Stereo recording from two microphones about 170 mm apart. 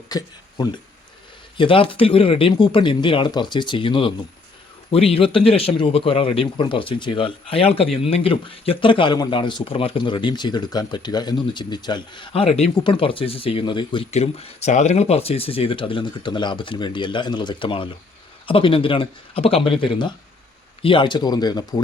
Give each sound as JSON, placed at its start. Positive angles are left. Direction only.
{"t": 0.1, "sound": "a man's voice", "side_deg": 25}